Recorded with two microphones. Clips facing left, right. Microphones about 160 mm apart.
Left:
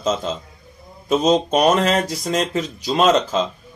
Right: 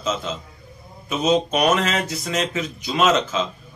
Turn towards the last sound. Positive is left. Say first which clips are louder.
# left 3 dB
turn(degrees=35)  # may be behind; listen again after turning